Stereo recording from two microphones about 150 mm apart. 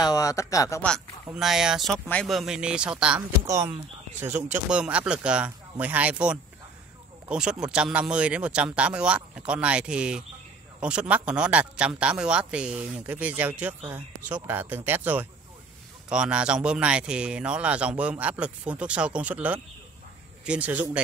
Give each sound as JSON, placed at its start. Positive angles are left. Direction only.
{"t": 0.0, "sound": "speech", "side_deg": 20}
{"t": 0.8, "sound": "a man's voice", "side_deg": 0}
{"t": 3.4, "sound": "a man's voice", "side_deg": -20}